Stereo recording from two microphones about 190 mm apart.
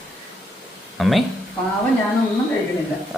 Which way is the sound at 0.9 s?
Centre (ahead or behind).